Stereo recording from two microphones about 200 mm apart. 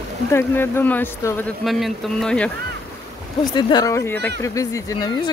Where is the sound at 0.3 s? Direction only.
10° left (ahead or behind).